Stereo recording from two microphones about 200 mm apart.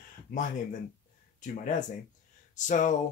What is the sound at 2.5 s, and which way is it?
Speech, 40° left (ahead or behind).